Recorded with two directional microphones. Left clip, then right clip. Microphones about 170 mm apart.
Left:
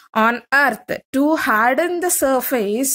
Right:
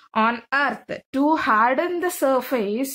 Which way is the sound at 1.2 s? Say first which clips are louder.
Left 2 dB; 30° left (ahead or behind).